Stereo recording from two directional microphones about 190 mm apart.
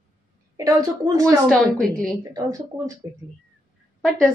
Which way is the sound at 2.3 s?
15° right (ahead or behind).